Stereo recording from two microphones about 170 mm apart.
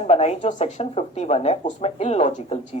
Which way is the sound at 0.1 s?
40° left (ahead or behind).